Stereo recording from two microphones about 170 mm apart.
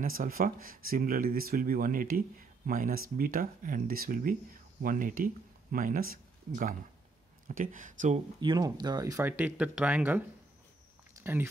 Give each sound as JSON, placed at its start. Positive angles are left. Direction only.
{"t": 0.0, "sound": "speech", "side_deg": -55}
{"t": 8.4, "sound": "speech", "side_deg": -25}